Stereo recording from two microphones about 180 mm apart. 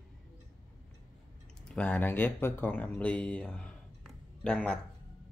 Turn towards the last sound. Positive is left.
turn(degrees=5)  # may be behind; listen again after turning